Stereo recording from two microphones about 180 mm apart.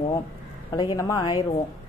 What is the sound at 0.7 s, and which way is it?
Speech, 25° left (ahead or behind).